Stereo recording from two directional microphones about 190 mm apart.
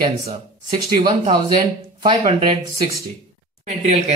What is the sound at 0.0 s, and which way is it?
Speech, 25° right (ahead or behind).